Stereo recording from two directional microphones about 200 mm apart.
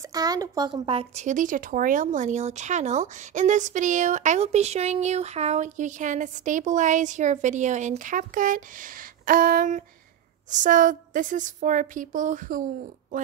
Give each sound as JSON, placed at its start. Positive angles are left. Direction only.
{"t": 0.0, "sound": "speech", "side_deg": -20}